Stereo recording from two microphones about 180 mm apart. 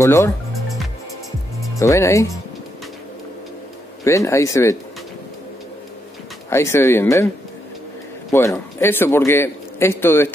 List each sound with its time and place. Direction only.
0.0 s a man's voice: 15° left (ahead or behind)
1.8 s a man's voice: 15° left (ahead or behind)
4.0 s a man's voice: 15° left (ahead or behind)
6.5 s a man's voice: 15° left (ahead or behind)
8.3 s a man's voice: 15° left (ahead or behind)